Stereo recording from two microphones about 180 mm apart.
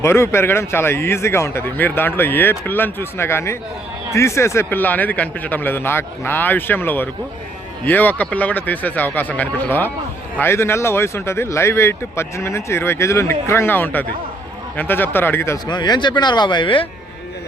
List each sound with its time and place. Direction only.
0.0 s speech: 15° left (ahead or behind)